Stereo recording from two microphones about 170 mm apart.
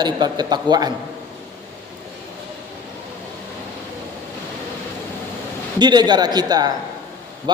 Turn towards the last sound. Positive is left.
turn(degrees=-25)  # may be behind; listen again after turning